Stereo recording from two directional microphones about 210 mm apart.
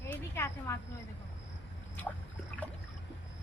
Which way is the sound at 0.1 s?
15° left (ahead or behind).